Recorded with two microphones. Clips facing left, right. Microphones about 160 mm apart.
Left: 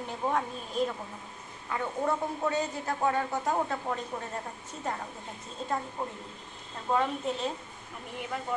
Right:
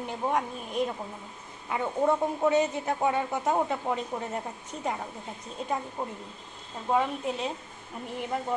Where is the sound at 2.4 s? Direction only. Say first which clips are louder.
Right 6 dB; 20° right (ahead or behind).